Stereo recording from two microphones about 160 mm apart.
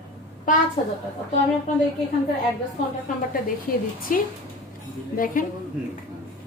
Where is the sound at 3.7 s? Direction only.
60° left (ahead or behind).